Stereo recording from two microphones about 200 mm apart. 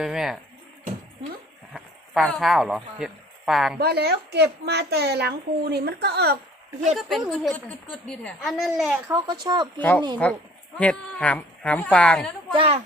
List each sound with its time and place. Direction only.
0.0 s a woman's voice: centre (ahead or behind)
1.7 s speech: centre (ahead or behind)
3.8 s a woman's voice: 55° right (ahead or behind)
6.8 s a woman's voice: centre (ahead or behind)
9.1 s speech: 20° right (ahead or behind)
9.7 s speech: 10° left (ahead or behind)
12.5 s speech: 30° right (ahead or behind)